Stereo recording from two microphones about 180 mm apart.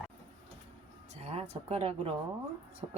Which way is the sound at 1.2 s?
35° right (ahead or behind).